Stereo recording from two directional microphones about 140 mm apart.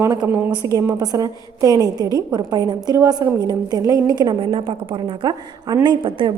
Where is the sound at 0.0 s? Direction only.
25° right (ahead or behind).